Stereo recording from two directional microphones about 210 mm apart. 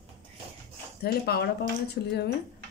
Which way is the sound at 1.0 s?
50° left (ahead or behind).